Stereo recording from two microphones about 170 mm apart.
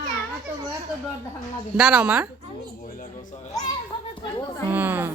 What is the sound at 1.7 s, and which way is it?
Speech, 5° right (ahead or behind).